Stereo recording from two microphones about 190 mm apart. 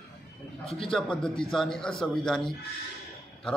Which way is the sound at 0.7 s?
Centre (ahead or behind).